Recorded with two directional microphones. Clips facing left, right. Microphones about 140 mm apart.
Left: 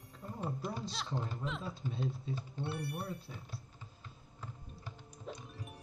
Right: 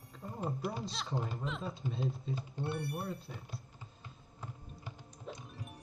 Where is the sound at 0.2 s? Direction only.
20° right (ahead or behind).